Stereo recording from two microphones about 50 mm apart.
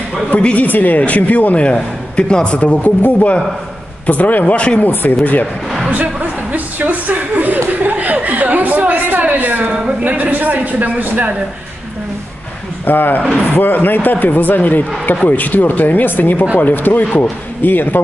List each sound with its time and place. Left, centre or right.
0.4 s a man's voice: left
0.7 s a man's voice: left
3.0 s speech: left
4.0 s speech: left
6.5 s a woman's voice: right
10.0 s a man's voice: right
12.8 s speech: left